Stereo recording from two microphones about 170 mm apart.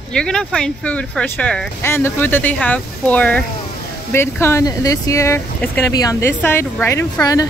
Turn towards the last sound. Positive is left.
turn(degrees=20)  # may be behind; listen again after turning